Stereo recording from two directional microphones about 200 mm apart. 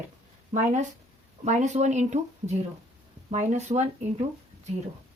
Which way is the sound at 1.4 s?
35° right (ahead or behind).